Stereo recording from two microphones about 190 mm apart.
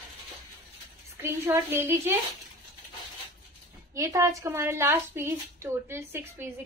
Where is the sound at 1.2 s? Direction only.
15° right (ahead or behind).